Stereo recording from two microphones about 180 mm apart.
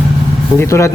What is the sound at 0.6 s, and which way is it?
Speech, 15° left (ahead or behind).